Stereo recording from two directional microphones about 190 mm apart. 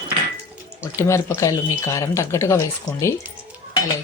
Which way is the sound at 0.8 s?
15° left (ahead or behind).